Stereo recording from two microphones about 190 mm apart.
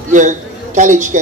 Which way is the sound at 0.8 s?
40° right (ahead or behind).